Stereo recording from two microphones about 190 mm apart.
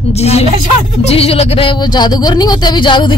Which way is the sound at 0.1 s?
35° left (ahead or behind).